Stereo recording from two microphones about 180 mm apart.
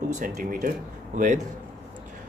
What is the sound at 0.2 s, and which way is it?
Speech, 45° right (ahead or behind).